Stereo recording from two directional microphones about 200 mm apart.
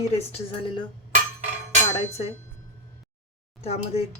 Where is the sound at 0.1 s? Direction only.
30° left (ahead or behind).